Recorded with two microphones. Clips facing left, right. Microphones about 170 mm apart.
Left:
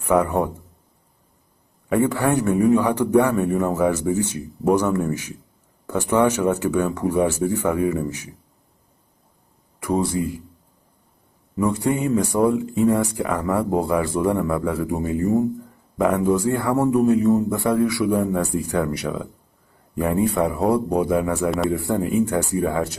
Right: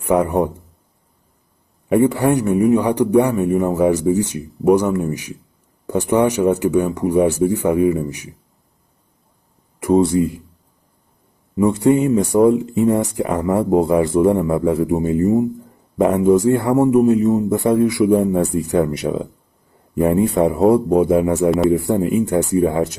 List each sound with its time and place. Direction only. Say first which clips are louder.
0.0 s speech: right 3 dB; 15° right (ahead or behind)
1.9 s a man's voice: right 5 dB; 15° right (ahead or behind)
9.8 s speech: right 8 dB; 25° right (ahead or behind)
11.5 s speech: right 7 dB; 20° right (ahead or behind)